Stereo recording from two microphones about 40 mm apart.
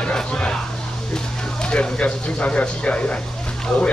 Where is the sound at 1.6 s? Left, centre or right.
Left.